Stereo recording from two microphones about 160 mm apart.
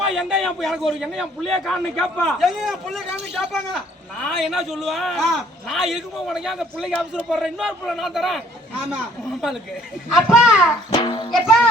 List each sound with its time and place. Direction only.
0.1 s a man's voice: 5° right (ahead or behind)
10.1 s a man's voice: centre (ahead or behind)
11.0 s music: 30° left (ahead or behind)
11.3 s a child's voice: centre (ahead or behind)